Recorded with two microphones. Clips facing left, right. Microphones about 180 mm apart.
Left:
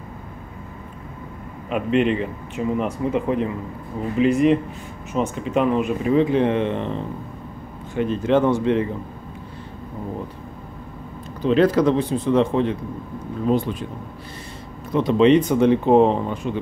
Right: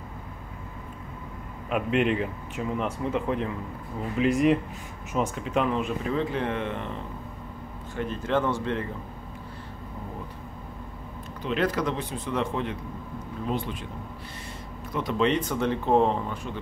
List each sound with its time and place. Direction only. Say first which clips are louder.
1.7 s speech: left 5 dB; 5° right (ahead or behind)
6.2 s speech: left 9 dB; 20° left (ahead or behind)
11.4 s speech: left 10 dB; 35° left (ahead or behind)
13.5 s speech: left 10 dB; 40° left (ahead or behind)
14.9 s speech: left 10 dB; 25° left (ahead or behind)